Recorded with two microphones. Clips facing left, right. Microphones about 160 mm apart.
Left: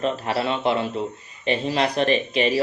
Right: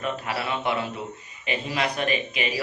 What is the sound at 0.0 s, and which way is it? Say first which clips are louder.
A man's voice: left 5 dB; 30° left (ahead or behind).